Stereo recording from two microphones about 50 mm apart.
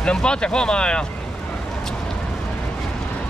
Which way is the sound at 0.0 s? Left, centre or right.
Centre.